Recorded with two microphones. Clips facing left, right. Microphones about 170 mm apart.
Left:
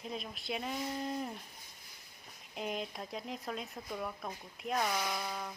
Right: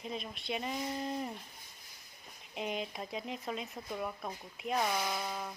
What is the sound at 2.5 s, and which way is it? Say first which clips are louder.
Speech: right 1 dB; centre (ahead or behind).